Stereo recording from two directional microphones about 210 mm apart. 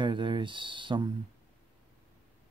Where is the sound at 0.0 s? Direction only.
20° right (ahead or behind).